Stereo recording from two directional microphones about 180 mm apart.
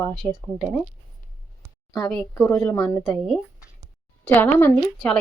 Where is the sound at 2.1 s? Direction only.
5° left (ahead or behind).